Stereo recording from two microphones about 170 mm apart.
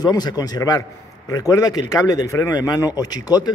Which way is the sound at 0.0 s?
25° left (ahead or behind).